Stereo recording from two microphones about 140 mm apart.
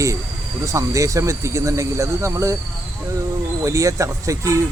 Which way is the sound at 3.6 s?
20° right (ahead or behind).